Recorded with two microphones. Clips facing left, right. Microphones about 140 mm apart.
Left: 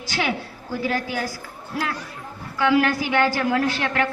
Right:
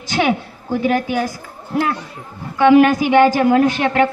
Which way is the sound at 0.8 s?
20° right (ahead or behind).